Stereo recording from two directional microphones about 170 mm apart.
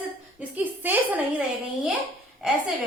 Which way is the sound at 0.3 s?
10° right (ahead or behind).